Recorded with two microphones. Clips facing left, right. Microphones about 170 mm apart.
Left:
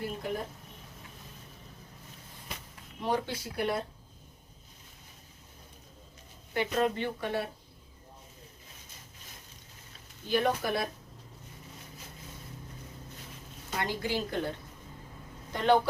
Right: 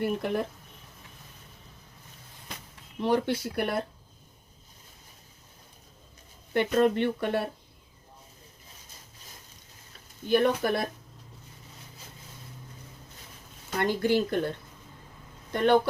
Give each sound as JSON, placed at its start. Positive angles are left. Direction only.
{"t": 0.0, "sound": "speech", "side_deg": -65}
{"t": 3.0, "sound": "speech", "side_deg": -65}
{"t": 6.5, "sound": "speech", "side_deg": -60}
{"t": 10.2, "sound": "speech", "side_deg": -60}
{"t": 13.7, "sound": "speech", "side_deg": -55}
{"t": 15.5, "sound": "speech", "side_deg": -60}